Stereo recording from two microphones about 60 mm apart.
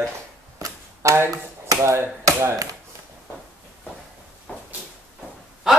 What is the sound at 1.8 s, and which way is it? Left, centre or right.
Speech, right.